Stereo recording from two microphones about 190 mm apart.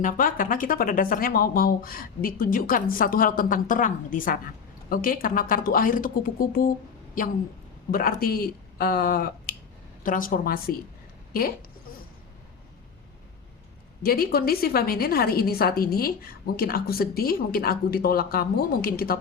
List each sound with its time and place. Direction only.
0.0 s speech: 45° left (ahead or behind)
14.0 s speech: 50° left (ahead or behind)